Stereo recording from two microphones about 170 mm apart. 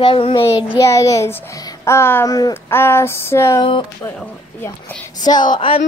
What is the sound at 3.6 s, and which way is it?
Child singing, 30° left (ahead or behind).